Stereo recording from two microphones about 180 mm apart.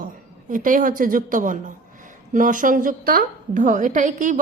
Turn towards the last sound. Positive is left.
turn(degrees=-45)  # may be behind; listen again after turning